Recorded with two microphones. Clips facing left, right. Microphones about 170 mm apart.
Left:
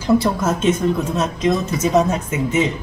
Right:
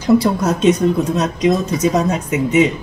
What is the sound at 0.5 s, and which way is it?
Speech, 20° right (ahead or behind).